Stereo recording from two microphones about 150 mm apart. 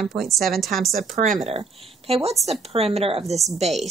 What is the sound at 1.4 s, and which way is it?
A woman's voice, 40° right (ahead or behind).